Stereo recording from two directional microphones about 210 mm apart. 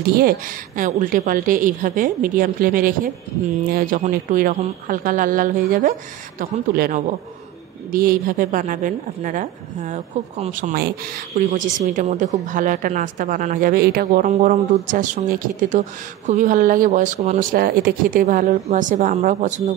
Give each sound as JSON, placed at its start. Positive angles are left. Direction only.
{"t": 0.0, "sound": "a man's voice", "side_deg": -45}